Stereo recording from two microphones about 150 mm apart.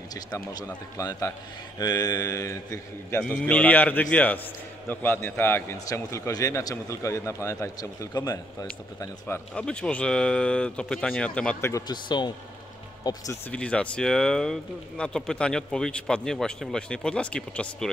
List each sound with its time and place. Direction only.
0.1 s a man's voice: 25° left (ahead or behind)
9.6 s speech: 5° left (ahead or behind)
11.7 s a man's voice: 30° left (ahead or behind)
13.5 s speech: 5° left (ahead or behind)